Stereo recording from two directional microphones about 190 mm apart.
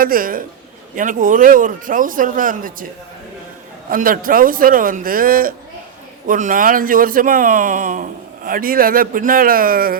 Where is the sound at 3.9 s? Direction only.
50° right (ahead or behind).